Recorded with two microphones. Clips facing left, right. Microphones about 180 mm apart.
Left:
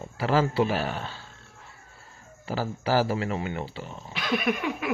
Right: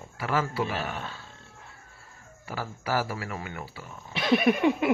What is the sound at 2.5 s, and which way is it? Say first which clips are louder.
Speech: left 5 dB; 30° left (ahead or behind).